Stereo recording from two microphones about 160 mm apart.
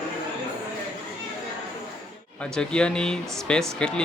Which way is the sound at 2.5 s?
5° left (ahead or behind).